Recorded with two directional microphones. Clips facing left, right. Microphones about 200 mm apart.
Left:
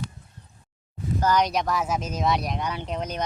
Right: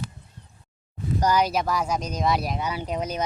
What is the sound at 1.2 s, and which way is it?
Speech, 10° right (ahead or behind).